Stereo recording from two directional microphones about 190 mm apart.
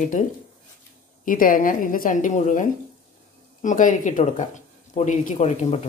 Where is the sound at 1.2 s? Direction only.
45° left (ahead or behind).